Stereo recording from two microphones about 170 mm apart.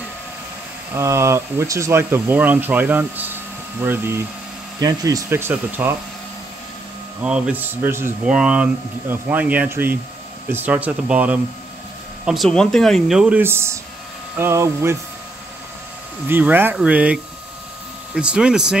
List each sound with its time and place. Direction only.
0.9 s speech: 15° right (ahead or behind)
7.2 s speech: 5° right (ahead or behind)
12.3 s speech: centre (ahead or behind); by 15.0 s 15° right (ahead or behind)
16.3 s speech: 10° right (ahead or behind)